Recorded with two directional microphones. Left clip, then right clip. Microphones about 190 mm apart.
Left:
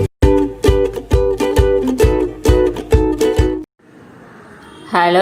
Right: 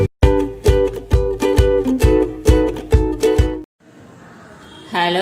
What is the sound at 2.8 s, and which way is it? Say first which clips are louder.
Music: left 3 dB; centre (ahead or behind).